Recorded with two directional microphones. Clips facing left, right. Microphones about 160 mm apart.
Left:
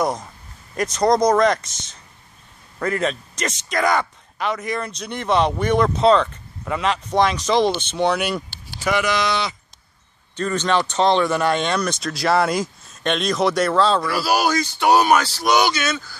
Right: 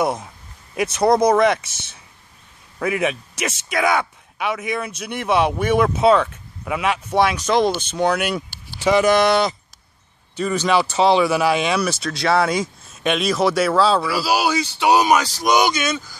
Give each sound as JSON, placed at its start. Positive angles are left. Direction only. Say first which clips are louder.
{"t": 0.0, "sound": "speech", "louder": "right 1 dB", "side_deg": -5}
{"t": 9.0, "sound": "speech", "louder": "right 6 dB", "side_deg": -55}
{"t": 10.3, "sound": "speech", "louder": "right 2 dB", "side_deg": -10}